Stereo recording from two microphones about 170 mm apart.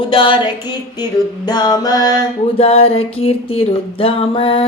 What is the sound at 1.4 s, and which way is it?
Female singing, 25° left (ahead or behind).